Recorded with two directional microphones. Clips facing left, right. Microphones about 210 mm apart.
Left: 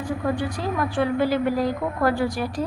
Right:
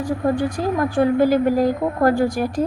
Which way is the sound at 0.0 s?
45° right (ahead or behind).